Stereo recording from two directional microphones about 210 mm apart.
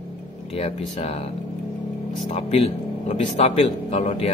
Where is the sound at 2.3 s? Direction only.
30° left (ahead or behind).